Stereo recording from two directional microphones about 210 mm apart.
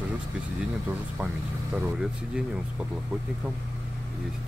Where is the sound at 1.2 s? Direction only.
5° right (ahead or behind).